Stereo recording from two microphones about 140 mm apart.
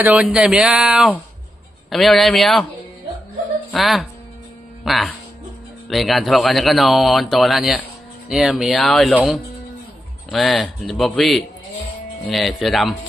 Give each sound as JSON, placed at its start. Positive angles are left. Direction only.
{"t": 0.0, "sound": "speech", "side_deg": -10}
{"t": 3.7, "sound": "speech", "side_deg": 0}
{"t": 10.3, "sound": "speech", "side_deg": 0}